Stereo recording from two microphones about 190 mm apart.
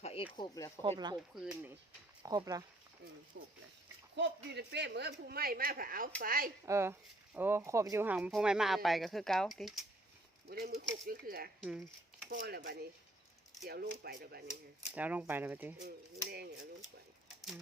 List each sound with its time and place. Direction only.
0.0 s a sound: 30° left (ahead or behind)
0.3 s speech: 20° left (ahead or behind)
0.8 s speech: 25° right (ahead or behind)
1.4 s speech: 5° right (ahead or behind)
2.2 s speech: 20° right (ahead or behind)
3.3 s a woman's voice: 70° right (ahead or behind); by 6.5 s 50° right (ahead or behind)
6.7 s speech: 15° right (ahead or behind)
10.5 s a woman's voice: 50° right (ahead or behind)
14.9 s speech: 10° right (ahead or behind)
16.3 s a woman's voice: 55° right (ahead or behind)